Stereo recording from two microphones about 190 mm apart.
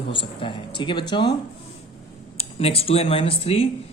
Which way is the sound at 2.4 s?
30° left (ahead or behind).